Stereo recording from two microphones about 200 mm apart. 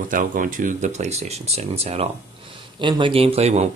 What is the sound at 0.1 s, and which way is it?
Speech, 40° right (ahead or behind).